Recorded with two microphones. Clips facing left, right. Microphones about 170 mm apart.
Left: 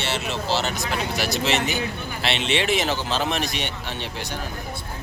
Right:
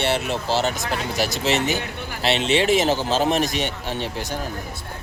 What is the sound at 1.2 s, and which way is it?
Speech, 40° right (ahead or behind).